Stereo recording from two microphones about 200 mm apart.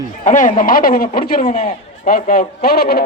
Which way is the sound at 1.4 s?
35° left (ahead or behind).